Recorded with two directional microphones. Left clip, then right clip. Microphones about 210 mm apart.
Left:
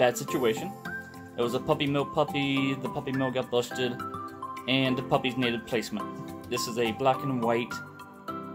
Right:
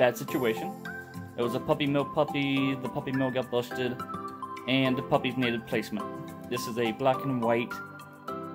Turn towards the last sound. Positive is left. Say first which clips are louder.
# even
turn(degrees=0)  # may be behind; listen again after turning